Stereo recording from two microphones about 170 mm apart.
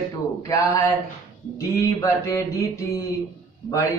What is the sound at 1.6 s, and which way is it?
Mantra, 20° left (ahead or behind).